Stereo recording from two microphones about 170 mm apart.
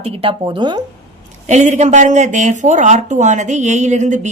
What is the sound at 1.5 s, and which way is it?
A woman's voice, 45° right (ahead or behind).